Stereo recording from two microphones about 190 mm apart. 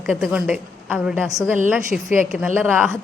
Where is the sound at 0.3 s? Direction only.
5° right (ahead or behind).